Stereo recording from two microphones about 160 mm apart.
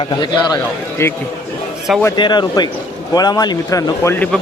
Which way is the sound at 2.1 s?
25° left (ahead or behind).